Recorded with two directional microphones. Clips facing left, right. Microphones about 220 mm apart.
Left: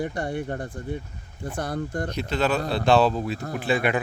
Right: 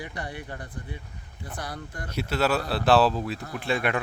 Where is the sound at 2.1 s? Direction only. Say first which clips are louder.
Right 1 dB; 5° right (ahead or behind).